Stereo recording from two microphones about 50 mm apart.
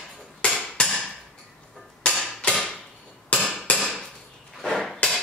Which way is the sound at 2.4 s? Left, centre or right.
Left.